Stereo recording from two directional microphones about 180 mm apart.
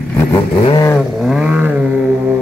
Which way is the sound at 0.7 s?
25° left (ahead or behind).